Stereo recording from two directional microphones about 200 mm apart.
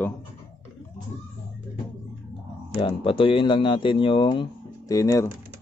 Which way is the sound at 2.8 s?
25° left (ahead or behind).